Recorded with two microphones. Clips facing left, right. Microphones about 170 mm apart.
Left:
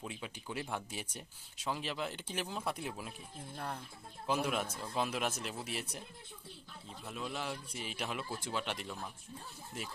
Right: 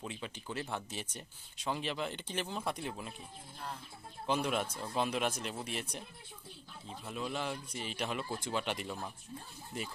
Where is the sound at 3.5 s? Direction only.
60° left (ahead or behind).